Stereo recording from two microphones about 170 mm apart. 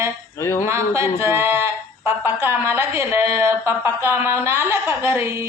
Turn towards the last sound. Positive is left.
turn(degrees=-15)  # may be behind; listen again after turning